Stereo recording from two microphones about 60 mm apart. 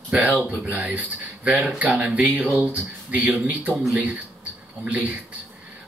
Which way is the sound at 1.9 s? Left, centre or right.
Right.